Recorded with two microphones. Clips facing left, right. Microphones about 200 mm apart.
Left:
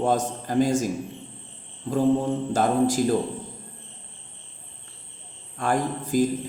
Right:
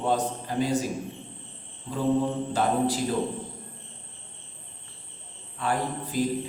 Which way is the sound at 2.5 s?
45° left (ahead or behind).